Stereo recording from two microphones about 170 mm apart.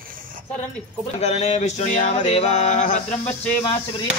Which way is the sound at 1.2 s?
40° left (ahead or behind).